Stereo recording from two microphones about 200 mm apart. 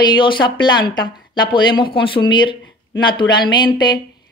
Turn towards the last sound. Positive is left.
turn(degrees=20)  # may be behind; listen again after turning